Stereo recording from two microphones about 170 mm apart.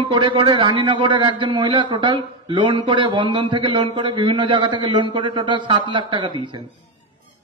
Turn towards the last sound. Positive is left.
turn(degrees=-30)  # may be behind; listen again after turning